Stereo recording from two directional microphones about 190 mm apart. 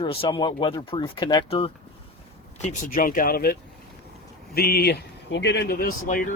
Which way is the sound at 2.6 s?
45° left (ahead or behind).